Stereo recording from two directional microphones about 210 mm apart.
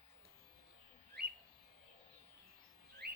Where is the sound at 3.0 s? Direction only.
50° right (ahead or behind).